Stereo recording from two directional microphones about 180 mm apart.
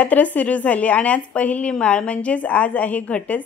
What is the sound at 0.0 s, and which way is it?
A woman's voice, 10° left (ahead or behind).